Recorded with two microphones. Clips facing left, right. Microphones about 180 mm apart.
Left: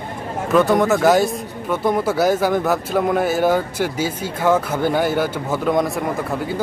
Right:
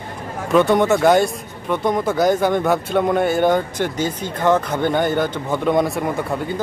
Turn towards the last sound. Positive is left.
turn(degrees=0)  # may be behind; listen again after turning